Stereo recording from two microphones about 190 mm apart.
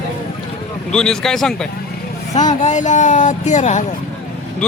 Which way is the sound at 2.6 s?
40° left (ahead or behind).